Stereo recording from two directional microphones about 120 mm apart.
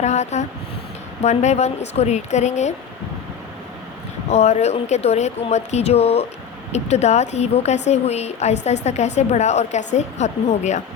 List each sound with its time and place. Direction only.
0.0 s a woman's voice: 70° left (ahead or behind)
4.3 s a woman's voice: 65° left (ahead or behind)